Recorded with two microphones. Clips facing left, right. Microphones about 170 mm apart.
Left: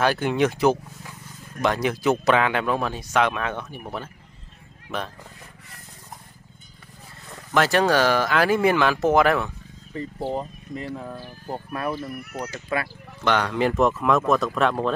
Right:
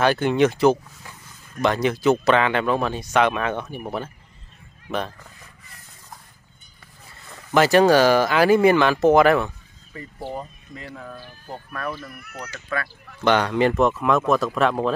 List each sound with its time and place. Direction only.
0.0 s speech: 5° left (ahead or behind)
7.5 s speech: 5° right (ahead or behind)
10.2 s speech: 20° left (ahead or behind)
13.2 s speech: centre (ahead or behind)